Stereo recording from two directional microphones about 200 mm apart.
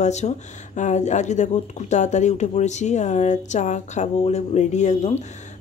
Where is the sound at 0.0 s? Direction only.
35° left (ahead or behind).